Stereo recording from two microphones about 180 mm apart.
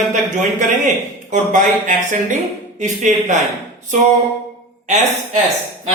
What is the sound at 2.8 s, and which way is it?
Speech, 45° right (ahead or behind).